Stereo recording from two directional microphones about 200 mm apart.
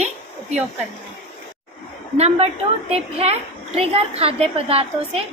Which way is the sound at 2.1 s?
30° right (ahead or behind).